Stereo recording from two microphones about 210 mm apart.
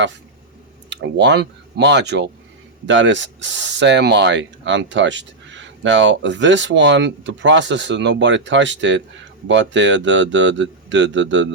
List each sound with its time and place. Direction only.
0.9 s speech: 55° right (ahead or behind)